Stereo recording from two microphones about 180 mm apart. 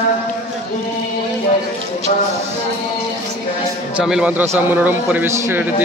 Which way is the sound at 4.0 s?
5° right (ahead or behind).